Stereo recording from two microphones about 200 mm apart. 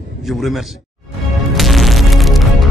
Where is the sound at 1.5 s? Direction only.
Centre (ahead or behind).